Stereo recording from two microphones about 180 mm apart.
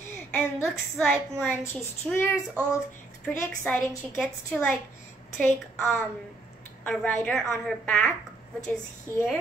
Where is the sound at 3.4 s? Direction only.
10° left (ahead or behind).